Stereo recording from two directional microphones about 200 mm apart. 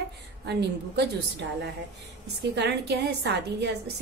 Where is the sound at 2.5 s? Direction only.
60° right (ahead or behind).